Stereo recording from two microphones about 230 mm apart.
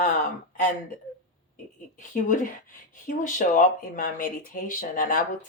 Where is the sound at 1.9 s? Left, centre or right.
Left.